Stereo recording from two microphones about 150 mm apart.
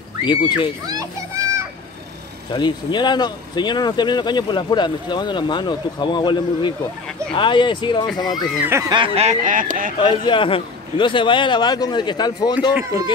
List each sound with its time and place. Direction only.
0.2 s a man's voice: 30° left (ahead or behind)
0.8 s children playing: 25° right (ahead or behind)
2.5 s a man's voice: 30° left (ahead or behind)
8.6 s speech: 20° right (ahead or behind)
8.9 s speech: 40° right (ahead or behind); by 9.9 s 65° right (ahead or behind)
9.9 s a man's voice: 30° left (ahead or behind)